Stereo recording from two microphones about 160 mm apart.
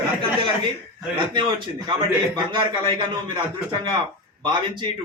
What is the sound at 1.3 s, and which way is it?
A man's voice, 30° right (ahead or behind).